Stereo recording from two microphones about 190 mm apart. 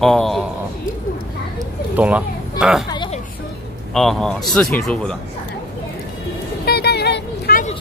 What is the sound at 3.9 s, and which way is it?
Speech, centre (ahead or behind).